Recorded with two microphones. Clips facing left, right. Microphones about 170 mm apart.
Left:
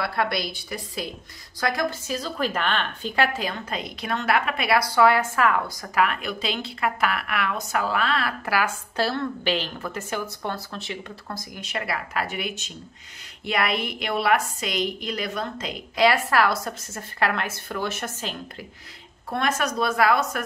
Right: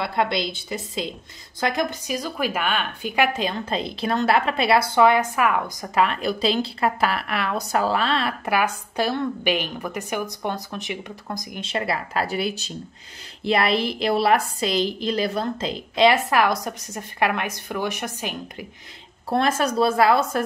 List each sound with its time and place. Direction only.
0.0 s a woman's voice: 20° right (ahead or behind)
11.6 s a woman's voice: 25° right (ahead or behind)
19.2 s a woman's voice: 30° right (ahead or behind)